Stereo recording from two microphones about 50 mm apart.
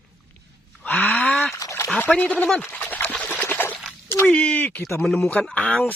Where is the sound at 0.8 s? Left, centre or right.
Left.